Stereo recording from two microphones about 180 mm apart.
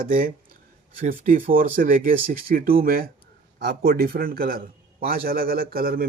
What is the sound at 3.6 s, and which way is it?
A man's voice, 65° right (ahead or behind).